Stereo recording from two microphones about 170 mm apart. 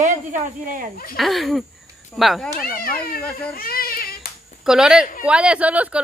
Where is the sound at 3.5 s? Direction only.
60° left (ahead or behind).